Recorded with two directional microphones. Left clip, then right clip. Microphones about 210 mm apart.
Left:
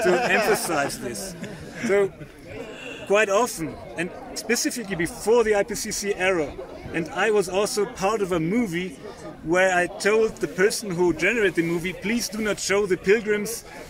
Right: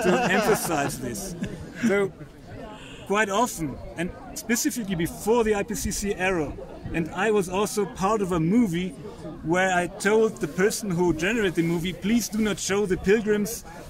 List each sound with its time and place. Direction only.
0.0 s speech: 55° right (ahead or behind)
1.0 s a man's voice: 15° right (ahead or behind)
1.8 s speech: 55° right (ahead or behind)
3.1 s a man's voice: 15° right (ahead or behind)